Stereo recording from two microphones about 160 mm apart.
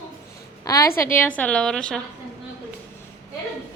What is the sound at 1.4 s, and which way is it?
Speech, 5° left (ahead or behind).